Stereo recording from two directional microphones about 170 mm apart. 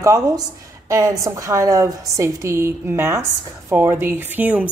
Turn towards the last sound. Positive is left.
turn(degrees=-10)  # may be behind; listen again after turning